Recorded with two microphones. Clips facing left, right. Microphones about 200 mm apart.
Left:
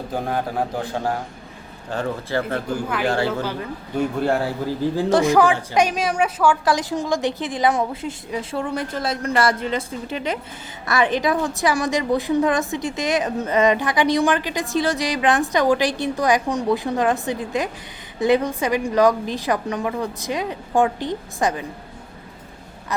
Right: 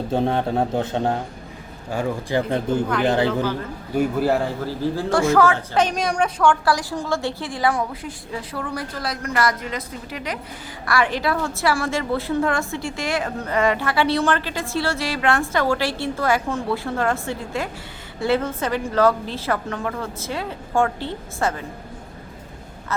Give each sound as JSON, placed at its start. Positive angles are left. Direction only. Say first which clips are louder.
{"t": 0.1, "sound": "a man's voice", "louder": "right 4 dB", "side_deg": -25}
{"t": 1.9, "sound": "speech", "louder": "right 1 dB", "side_deg": -10}
{"t": 3.4, "sound": "a woman's voice", "louder": "right 3 dB", "side_deg": 15}
{"t": 3.9, "sound": "speech", "louder": "right 1 dB", "side_deg": -5}
{"t": 4.6, "sound": "a woman's voice", "louder": "left 2 dB", "side_deg": 15}
{"t": 6.7, "sound": "a woman's voice", "louder": "left 1 dB", "side_deg": 20}
{"t": 22.9, "sound": "a woman's voice", "louder": "left 1 dB", "side_deg": 15}